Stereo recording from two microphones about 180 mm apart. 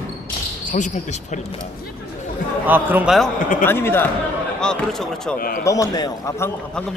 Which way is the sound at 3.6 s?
10° left (ahead or behind).